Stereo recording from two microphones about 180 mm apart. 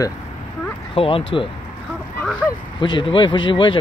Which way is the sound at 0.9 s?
30° left (ahead or behind).